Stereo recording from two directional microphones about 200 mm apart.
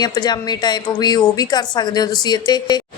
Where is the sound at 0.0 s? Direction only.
20° left (ahead or behind).